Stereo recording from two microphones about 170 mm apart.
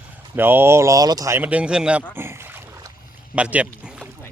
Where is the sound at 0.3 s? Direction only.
10° right (ahead or behind).